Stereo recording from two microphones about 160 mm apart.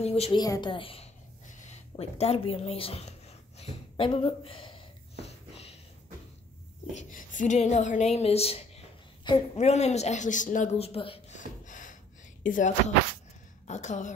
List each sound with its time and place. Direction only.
0.0 s a woman's voice: 40° left (ahead or behind)
0.4 s a woman's voice: 25° left (ahead or behind)
1.5 s a sound: 40° left (ahead or behind)
6.9 s speech: 50° left (ahead or behind)
11.3 s a sound: 50° left (ahead or behind)
12.4 s speech: 50° left (ahead or behind)